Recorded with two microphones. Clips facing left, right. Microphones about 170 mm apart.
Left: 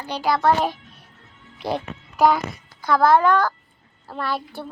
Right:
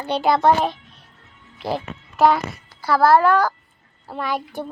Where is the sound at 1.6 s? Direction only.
Centre (ahead or behind).